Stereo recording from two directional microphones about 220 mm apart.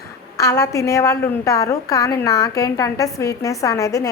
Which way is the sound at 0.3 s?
15° left (ahead or behind).